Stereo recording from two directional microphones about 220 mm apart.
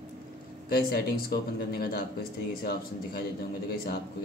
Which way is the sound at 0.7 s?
45° left (ahead or behind).